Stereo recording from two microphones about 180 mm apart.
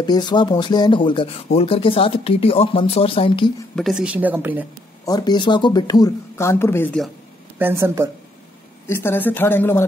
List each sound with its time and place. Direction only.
0.0 s speech: 25° left (ahead or behind)
3.7 s speech: centre (ahead or behind)
5.0 s speech: 20° left (ahead or behind)
7.5 s speech: 15° right (ahead or behind)
8.8 s speech: 10° left (ahead or behind)